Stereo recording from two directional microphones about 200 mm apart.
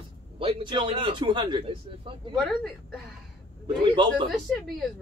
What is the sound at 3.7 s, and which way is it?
Speech, 25° right (ahead or behind).